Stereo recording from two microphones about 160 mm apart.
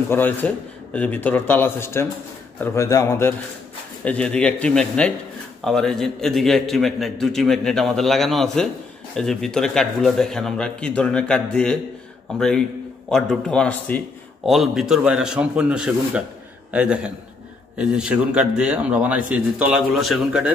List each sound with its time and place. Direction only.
0.1 s a man's voice: 10° left (ahead or behind)
4.0 s a man's voice: 5° left (ahead or behind)
14.5 s a man's voice: centre (ahead or behind)